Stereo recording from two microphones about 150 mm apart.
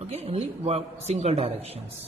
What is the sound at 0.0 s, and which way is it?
Speech, 45° right (ahead or behind).